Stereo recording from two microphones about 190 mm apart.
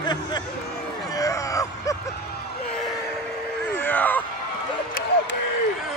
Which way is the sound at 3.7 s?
10° left (ahead or behind).